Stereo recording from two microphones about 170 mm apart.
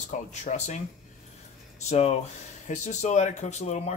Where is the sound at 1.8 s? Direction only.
40° left (ahead or behind).